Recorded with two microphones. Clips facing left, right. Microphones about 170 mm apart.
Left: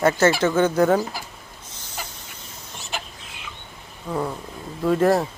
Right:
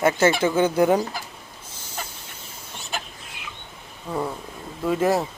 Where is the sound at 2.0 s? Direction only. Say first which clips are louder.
Right 1 dB; 5° left (ahead or behind).